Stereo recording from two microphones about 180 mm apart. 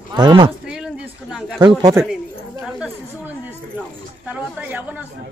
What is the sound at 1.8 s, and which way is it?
Speech, 20° right (ahead or behind).